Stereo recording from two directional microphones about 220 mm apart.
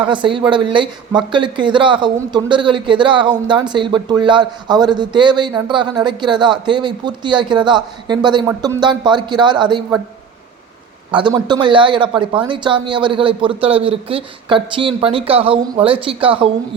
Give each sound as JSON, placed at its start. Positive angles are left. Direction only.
{"t": 0.0, "sound": "speech", "side_deg": -20}
{"t": 11.1, "sound": "speech", "side_deg": -20}